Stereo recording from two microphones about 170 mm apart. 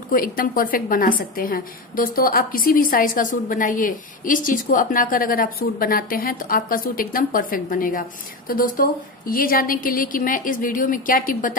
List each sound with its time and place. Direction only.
0.1 s a woman's voice: 55° left (ahead or behind)